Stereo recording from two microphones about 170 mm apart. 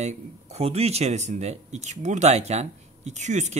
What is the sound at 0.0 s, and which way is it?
Speech, 40° right (ahead or behind).